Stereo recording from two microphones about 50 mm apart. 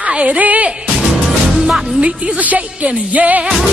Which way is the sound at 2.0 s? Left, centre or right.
Right.